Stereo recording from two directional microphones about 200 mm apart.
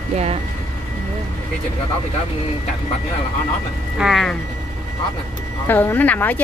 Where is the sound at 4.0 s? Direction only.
Centre (ahead or behind).